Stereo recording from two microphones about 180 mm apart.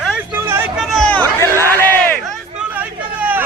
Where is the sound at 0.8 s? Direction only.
5° left (ahead or behind).